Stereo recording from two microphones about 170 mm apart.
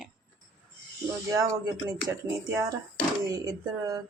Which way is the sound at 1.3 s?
20° right (ahead or behind).